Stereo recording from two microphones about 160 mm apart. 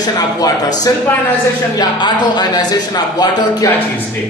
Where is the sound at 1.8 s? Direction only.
25° left (ahead or behind).